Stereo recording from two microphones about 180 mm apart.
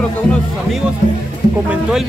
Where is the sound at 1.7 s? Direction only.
5° right (ahead or behind).